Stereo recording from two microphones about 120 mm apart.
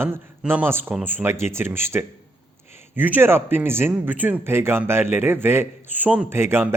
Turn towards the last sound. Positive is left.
turn(degrees=-20)  # may be behind; listen again after turning